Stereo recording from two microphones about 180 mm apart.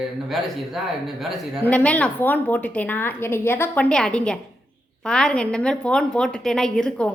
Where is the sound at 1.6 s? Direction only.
10° left (ahead or behind).